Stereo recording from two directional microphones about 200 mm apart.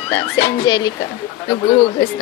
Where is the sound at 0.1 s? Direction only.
20° left (ahead or behind).